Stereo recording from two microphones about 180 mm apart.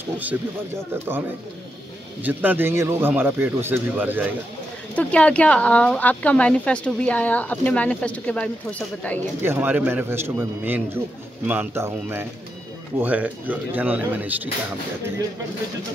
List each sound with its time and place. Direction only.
0.9 s speech: 10° right (ahead or behind)
2.2 s speech: 10° right (ahead or behind)
4.9 s speech: 5° left (ahead or behind)
9.4 s speech: 10° right (ahead or behind)